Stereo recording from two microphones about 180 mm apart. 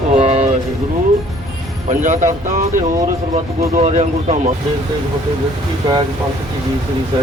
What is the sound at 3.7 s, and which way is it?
Speech, 40° right (ahead or behind).